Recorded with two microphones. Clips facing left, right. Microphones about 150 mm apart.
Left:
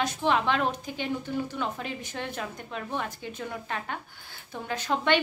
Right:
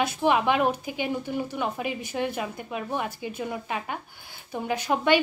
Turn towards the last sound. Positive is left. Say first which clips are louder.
# right 3 dB
turn(degrees=-10)  # may be behind; listen again after turning